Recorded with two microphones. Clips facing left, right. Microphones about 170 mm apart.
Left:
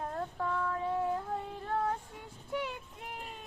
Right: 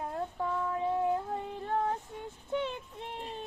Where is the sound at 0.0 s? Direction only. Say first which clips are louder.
Right 1 dB; 15° right (ahead or behind).